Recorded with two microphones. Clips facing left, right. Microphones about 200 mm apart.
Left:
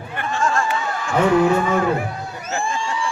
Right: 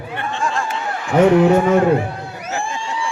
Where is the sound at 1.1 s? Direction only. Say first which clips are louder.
Right 4 dB; 45° right (ahead or behind).